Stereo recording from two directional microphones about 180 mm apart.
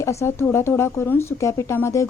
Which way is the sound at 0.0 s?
15° left (ahead or behind).